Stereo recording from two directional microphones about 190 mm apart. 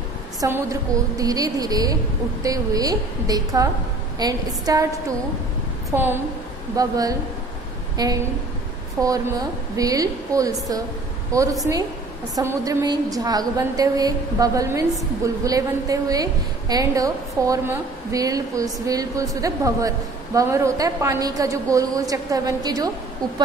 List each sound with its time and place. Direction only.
0.4 s a woman's voice: 20° right (ahead or behind)
5.9 s a woman's voice: 10° right (ahead or behind)